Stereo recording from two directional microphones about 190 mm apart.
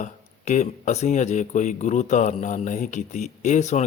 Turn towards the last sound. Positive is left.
turn(degrees=40)  # may be behind; listen again after turning